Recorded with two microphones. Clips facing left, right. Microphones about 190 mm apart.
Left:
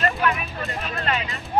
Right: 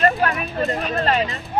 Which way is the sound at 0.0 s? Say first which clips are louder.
Right 4 dB; 35° right (ahead or behind).